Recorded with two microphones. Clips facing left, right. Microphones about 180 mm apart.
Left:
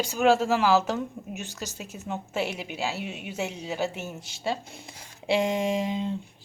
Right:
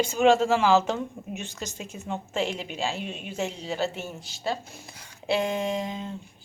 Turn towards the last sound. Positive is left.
turn(degrees=15)  # may be behind; listen again after turning